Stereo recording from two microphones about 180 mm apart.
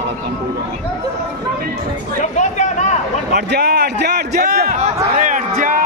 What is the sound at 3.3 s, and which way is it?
A man's voice, 65° right (ahead or behind).